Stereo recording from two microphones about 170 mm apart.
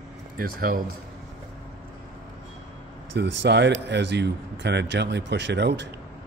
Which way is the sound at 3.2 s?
90° right.